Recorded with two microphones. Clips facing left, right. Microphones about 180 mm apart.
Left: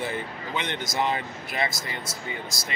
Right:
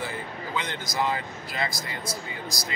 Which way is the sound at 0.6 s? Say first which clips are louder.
Left 1 dB; 25° left (ahead or behind).